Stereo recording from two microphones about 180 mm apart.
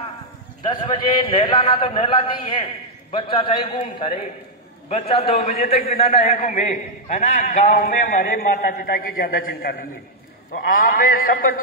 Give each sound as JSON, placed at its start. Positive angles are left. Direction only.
{"t": 0.7, "sound": "a man's voice", "side_deg": 30}